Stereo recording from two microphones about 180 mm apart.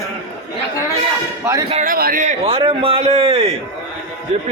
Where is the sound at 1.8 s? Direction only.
55° right (ahead or behind); by 3.5 s 30° right (ahead or behind).